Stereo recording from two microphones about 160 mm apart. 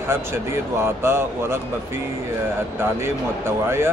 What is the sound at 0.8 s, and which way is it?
Speech, 15° right (ahead or behind).